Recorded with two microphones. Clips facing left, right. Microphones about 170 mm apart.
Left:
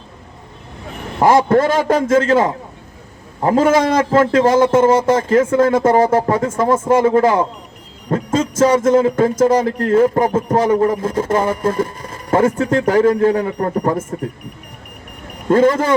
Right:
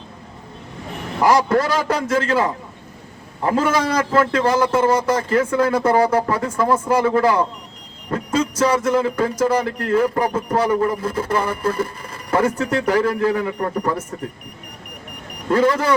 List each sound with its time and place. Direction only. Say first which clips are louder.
1.2 s a man's voice: left 4 dB; 50° left (ahead or behind)
15.4 s a man's voice: left 4 dB; 45° left (ahead or behind)